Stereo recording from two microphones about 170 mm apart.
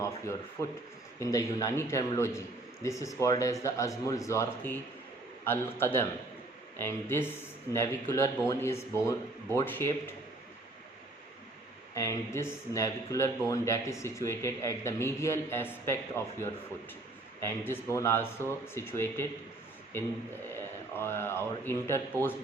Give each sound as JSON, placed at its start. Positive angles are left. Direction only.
{"t": 1.2, "sound": "speech", "side_deg": 20}
{"t": 11.9, "sound": "speech", "side_deg": 15}
{"t": 17.7, "sound": "speech", "side_deg": 15}
{"t": 20.5, "sound": "a man's voice", "side_deg": 15}